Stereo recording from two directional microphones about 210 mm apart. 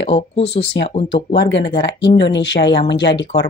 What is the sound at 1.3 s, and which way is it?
A woman's voice, 55° left (ahead or behind).